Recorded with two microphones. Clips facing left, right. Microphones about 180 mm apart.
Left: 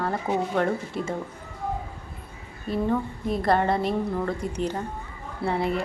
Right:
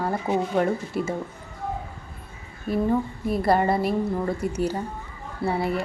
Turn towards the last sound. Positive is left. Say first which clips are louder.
# right 1 dB
turn(degrees=-5)  # may be behind; listen again after turning